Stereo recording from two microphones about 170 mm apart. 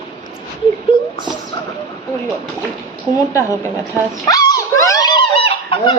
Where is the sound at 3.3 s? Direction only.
15° left (ahead or behind).